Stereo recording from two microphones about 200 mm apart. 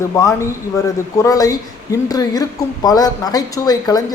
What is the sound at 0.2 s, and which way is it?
Speech, 15° left (ahead or behind).